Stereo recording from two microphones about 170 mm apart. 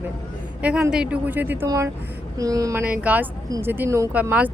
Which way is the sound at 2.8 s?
10° right (ahead or behind).